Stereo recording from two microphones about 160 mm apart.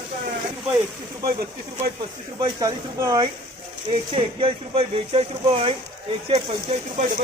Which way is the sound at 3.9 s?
35° right (ahead or behind).